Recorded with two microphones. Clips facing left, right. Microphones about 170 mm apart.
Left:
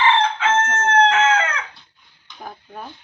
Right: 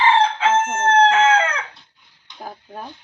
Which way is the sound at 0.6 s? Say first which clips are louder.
Even; 10° right (ahead or behind).